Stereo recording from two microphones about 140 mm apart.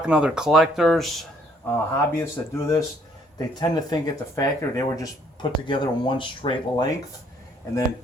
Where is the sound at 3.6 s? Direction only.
30° left (ahead or behind).